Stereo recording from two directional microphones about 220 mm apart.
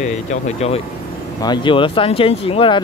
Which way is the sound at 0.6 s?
30° left (ahead or behind).